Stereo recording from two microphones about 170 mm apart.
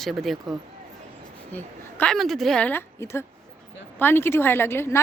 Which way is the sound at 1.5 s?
10° left (ahead or behind).